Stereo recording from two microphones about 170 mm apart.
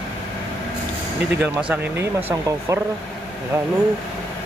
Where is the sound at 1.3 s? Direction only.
10° right (ahead or behind).